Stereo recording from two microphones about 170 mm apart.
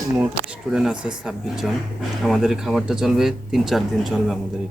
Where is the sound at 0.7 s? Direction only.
5° right (ahead or behind).